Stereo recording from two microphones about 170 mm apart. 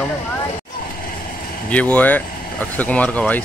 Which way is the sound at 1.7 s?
10° left (ahead or behind).